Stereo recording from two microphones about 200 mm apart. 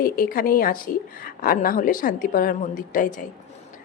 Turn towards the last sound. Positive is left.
turn(degrees=40)  # may be behind; listen again after turning